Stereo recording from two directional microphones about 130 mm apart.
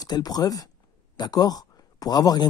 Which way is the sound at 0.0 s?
30° left (ahead or behind).